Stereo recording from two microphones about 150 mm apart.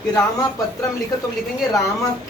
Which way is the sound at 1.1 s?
25° left (ahead or behind).